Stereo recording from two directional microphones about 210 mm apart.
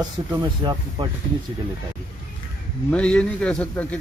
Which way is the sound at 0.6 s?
20° right (ahead or behind).